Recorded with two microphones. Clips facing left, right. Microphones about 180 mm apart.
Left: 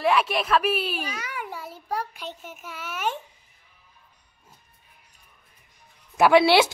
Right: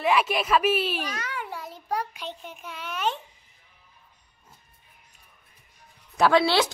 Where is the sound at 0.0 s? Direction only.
5° right (ahead or behind).